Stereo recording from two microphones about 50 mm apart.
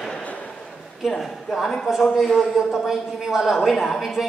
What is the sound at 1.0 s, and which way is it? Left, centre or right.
A man's voice, centre.